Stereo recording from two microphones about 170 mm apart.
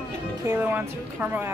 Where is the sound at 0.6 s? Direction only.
10° right (ahead or behind).